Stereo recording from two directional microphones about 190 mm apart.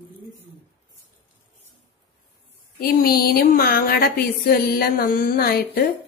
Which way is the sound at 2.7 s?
50° left (ahead or behind).